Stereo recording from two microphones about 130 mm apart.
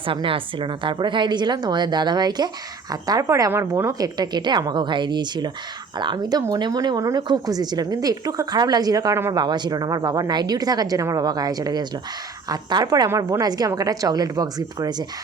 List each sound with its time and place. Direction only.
0.1 s a woman's voice: 40° right (ahead or behind)